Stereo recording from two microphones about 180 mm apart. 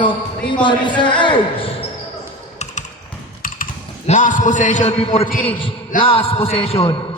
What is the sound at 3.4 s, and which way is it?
A man's voice, 50° left (ahead or behind).